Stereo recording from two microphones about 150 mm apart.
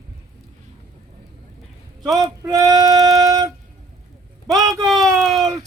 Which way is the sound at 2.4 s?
25° right (ahead or behind).